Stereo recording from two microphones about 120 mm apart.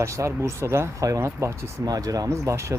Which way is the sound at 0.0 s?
25° right (ahead or behind).